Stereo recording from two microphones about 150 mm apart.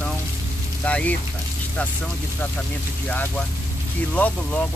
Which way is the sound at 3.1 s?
10° left (ahead or behind).